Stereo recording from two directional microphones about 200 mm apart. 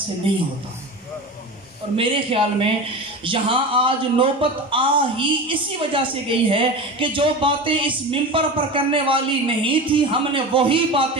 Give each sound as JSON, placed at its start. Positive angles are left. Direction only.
{"t": 2.0, "sound": "a man's voice", "side_deg": -25}